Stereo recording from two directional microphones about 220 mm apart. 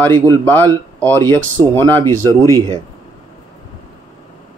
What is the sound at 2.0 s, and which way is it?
Speech, 15° right (ahead or behind).